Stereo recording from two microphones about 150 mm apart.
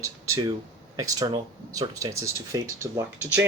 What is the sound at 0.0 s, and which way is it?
Speech, 20° right (ahead or behind).